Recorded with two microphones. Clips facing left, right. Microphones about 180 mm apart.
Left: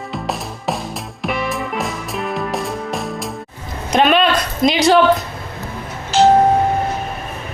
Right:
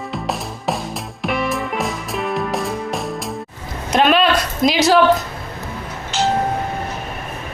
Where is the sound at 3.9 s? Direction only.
Centre (ahead or behind).